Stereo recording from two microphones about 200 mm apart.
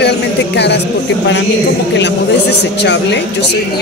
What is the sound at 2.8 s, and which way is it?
Speech, 60° left (ahead or behind).